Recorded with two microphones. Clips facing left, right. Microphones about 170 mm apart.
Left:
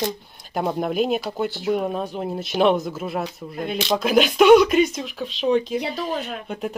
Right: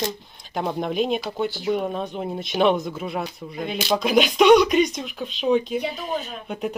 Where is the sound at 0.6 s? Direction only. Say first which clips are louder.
Left 2 dB; 5° left (ahead or behind).